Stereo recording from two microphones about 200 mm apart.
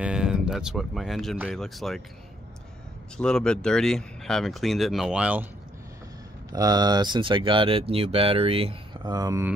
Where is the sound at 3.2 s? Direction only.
5° left (ahead or behind).